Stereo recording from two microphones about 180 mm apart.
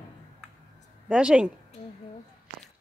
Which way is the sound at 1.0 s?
5° right (ahead or behind).